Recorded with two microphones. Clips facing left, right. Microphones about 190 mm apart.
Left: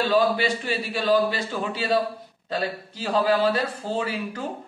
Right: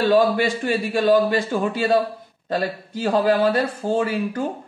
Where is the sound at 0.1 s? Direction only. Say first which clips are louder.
Right 4 dB; 50° right (ahead or behind).